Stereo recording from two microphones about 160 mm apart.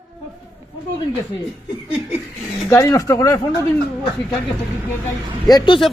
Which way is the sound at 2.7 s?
20° left (ahead or behind).